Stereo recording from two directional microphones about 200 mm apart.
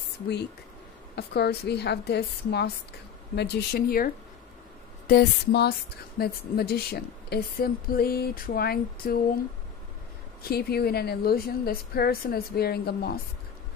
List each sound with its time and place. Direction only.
1.1 s a woman's voice: 55° left (ahead or behind)
10.4 s a woman's voice: 50° left (ahead or behind)